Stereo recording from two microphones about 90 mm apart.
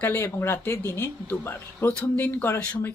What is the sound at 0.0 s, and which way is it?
Speech, 25° left (ahead or behind).